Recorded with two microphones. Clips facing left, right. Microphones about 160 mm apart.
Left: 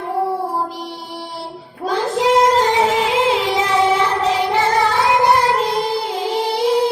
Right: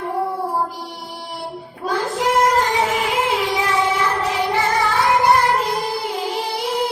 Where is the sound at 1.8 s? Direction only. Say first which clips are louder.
Left 3 dB; 20° left (ahead or behind).